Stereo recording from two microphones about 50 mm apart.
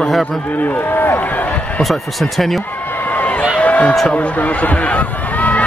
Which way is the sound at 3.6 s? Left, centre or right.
Left.